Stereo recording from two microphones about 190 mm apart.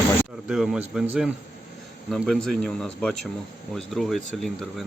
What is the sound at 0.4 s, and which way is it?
Speech, centre (ahead or behind).